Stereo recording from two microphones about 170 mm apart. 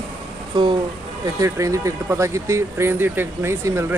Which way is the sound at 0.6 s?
30° right (ahead or behind).